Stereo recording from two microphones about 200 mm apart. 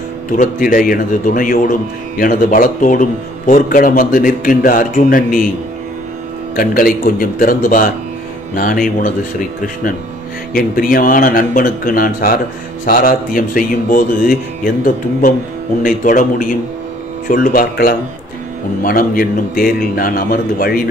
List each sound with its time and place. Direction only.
0.3 s a man's voice: 40° left (ahead or behind)
6.5 s a man's voice: 45° left (ahead or behind)
10.5 s a man's voice: 45° left (ahead or behind)
15.8 s a man's voice: 40° left (ahead or behind)